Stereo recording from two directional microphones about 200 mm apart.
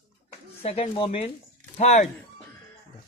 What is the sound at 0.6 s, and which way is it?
Speech, 30° left (ahead or behind).